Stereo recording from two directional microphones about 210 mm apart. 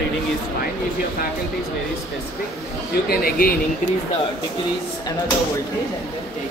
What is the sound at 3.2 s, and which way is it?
Speech, 45° left (ahead or behind).